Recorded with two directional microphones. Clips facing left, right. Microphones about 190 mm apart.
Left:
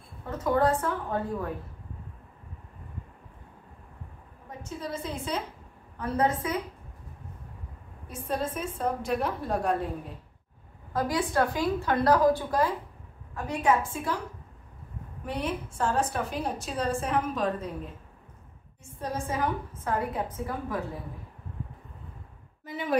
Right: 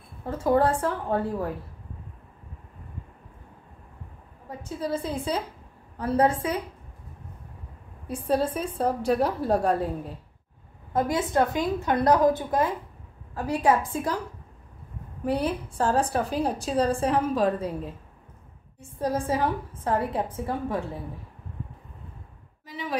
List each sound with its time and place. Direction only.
0.3 s a woman's voice: 30° right (ahead or behind)
4.5 s a woman's voice: 35° right (ahead or behind)
8.1 s a woman's voice: 35° right (ahead or behind)
10.9 s a woman's voice: 25° right (ahead or behind)
13.3 s a woman's voice: 35° right (ahead or behind)
15.2 s a woman's voice: 35° right (ahead or behind)
18.9 s a woman's voice: 30° right (ahead or behind)
22.7 s speech: 55° left (ahead or behind)